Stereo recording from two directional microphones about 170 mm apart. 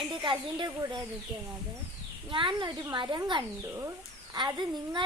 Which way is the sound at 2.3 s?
30° right (ahead or behind).